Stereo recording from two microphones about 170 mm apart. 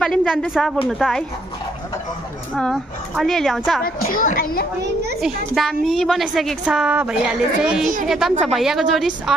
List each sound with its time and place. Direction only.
0.0 s speech: centre (ahead or behind)
2.5 s speech: 5° left (ahead or behind)
3.8 s a woman's voice: 55° left (ahead or behind)
5.2 s speech: centre (ahead or behind)